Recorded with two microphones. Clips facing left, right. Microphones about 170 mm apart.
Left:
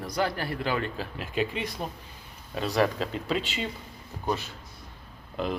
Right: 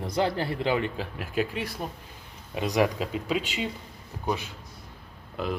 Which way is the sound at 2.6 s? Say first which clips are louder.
Right 1 dB; 15° right (ahead or behind).